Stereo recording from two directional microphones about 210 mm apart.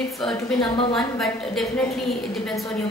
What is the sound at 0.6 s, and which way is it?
Speech, 25° left (ahead or behind).